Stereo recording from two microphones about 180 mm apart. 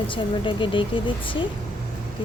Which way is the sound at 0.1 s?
30° left (ahead or behind).